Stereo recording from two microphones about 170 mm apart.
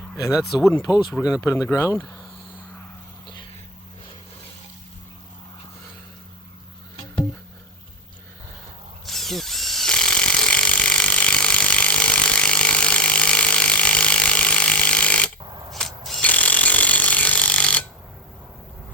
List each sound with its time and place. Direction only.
0.6 s speech: 20° left (ahead or behind)
9.0 s ratchet: centre (ahead or behind)